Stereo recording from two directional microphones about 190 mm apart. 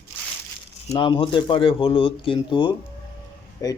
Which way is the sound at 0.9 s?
25° left (ahead or behind).